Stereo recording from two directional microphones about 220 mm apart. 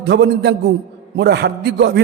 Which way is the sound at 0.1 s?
50° right (ahead or behind).